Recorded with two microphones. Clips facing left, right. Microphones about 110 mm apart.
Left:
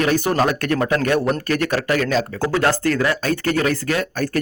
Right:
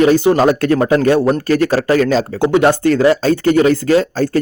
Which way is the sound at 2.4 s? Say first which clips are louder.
Right 10 dB; 20° right (ahead or behind).